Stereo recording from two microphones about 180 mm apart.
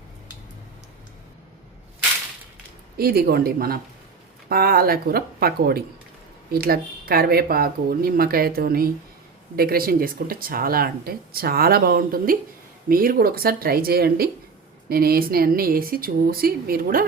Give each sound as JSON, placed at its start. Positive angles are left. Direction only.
{"t": 3.0, "sound": "speech", "side_deg": -60}